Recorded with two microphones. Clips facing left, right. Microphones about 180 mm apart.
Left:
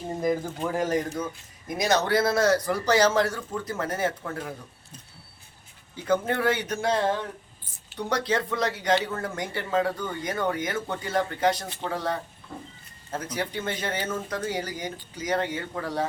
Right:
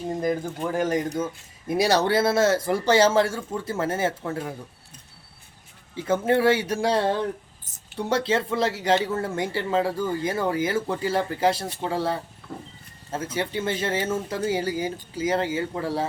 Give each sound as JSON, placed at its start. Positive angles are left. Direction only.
{"t": 0.6, "sound": "speech", "side_deg": -20}
{"t": 1.6, "sound": "speech", "side_deg": -30}
{"t": 6.1, "sound": "speech", "side_deg": -30}